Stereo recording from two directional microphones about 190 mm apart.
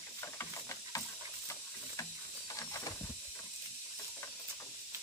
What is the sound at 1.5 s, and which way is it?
Steam, 15° left (ahead or behind).